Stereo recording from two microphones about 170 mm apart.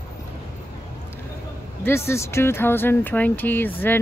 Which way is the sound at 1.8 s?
15° left (ahead or behind).